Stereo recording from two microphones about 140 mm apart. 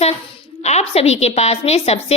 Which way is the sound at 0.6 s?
50° left (ahead or behind).